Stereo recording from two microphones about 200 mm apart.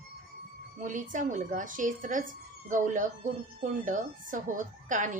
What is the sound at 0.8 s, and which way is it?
Speech, 40° right (ahead or behind).